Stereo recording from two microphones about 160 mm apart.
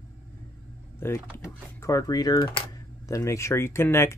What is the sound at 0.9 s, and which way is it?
Speech, 15° left (ahead or behind).